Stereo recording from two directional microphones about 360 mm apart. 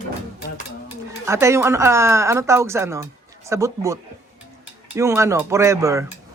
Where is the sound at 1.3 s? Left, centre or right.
Centre.